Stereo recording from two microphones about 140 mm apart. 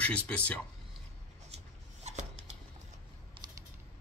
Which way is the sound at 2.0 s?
55° right (ahead or behind).